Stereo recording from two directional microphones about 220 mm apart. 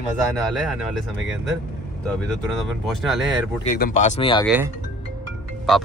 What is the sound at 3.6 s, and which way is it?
Speech, 40° left (ahead or behind).